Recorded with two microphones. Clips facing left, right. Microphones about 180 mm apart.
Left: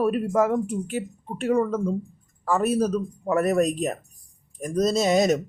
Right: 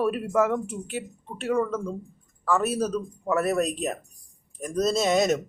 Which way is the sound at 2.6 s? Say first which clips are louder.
Left 4 dB; 35° left (ahead or behind).